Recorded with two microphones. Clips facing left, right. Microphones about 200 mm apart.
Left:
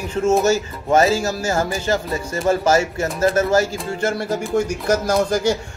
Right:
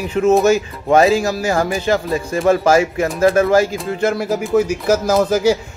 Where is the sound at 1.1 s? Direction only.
15° right (ahead or behind).